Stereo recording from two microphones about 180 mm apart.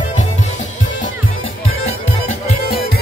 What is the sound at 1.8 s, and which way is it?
Music, 35° left (ahead or behind).